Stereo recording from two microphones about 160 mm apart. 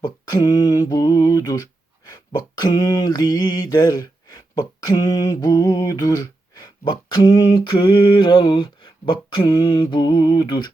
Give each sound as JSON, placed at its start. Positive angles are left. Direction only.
{"t": 0.0, "sound": "mantra", "side_deg": 25}
{"t": 2.0, "sound": "a sound", "side_deg": 25}
{"t": 9.6, "sound": "mantra", "side_deg": 30}